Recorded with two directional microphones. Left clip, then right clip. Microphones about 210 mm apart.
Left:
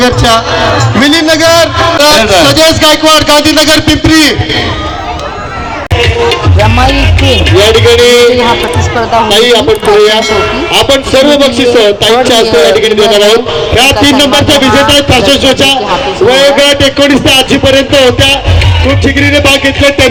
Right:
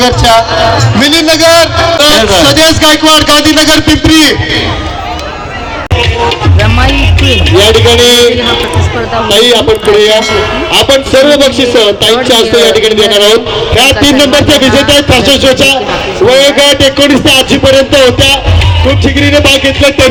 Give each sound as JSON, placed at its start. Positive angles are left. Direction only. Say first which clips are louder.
{"t": 0.0, "sound": "a man's voice", "louder": "right 1 dB", "side_deg": -35}
{"t": 6.6, "sound": "speech", "louder": "left 2 dB", "side_deg": 5}
{"t": 7.7, "sound": "a man's voice", "louder": "left 1 dB", "side_deg": -30}
{"t": 9.3, "sound": "a man's voice", "louder": "right 3 dB", "side_deg": -25}
{"t": 13.1, "sound": "speech", "louder": "left 2 dB", "side_deg": 0}
{"t": 13.3, "sound": "a man's voice", "louder": "even", "side_deg": -30}